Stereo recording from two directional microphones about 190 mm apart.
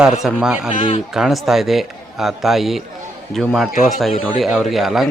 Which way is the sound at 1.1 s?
Centre (ahead or behind).